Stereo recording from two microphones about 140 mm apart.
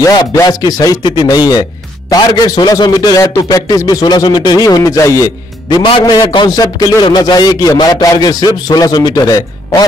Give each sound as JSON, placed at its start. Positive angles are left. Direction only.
{"t": 0.1, "sound": "a man's voice", "side_deg": 25}